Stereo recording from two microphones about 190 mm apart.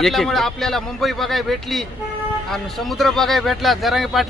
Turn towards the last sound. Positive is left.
turn(degrees=0)  # may be behind; listen again after turning